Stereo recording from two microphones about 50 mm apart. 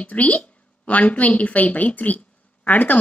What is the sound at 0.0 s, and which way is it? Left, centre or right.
A woman's voice, left.